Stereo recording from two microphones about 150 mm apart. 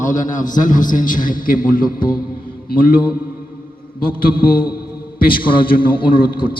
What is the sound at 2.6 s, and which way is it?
Mantra, 75° left (ahead or behind).